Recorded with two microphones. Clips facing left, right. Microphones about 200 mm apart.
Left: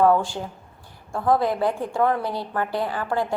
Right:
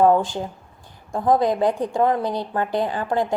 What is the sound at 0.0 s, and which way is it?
A woman's voice, 20° right (ahead or behind).